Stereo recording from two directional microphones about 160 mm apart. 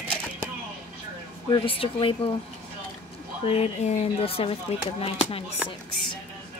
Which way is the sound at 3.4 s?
40° left (ahead or behind).